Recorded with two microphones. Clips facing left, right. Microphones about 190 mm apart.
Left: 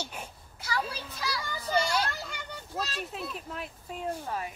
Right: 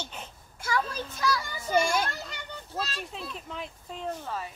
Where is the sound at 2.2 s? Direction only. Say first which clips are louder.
Even; 15° left (ahead or behind).